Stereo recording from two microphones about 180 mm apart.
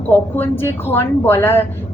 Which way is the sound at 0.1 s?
10° left (ahead or behind).